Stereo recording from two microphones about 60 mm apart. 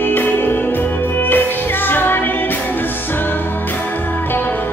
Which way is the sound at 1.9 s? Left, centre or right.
Left.